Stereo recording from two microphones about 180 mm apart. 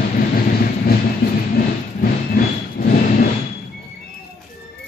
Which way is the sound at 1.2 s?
60° left (ahead or behind).